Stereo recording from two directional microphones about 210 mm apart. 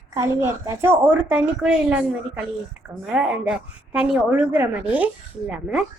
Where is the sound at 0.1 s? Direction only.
15° right (ahead or behind).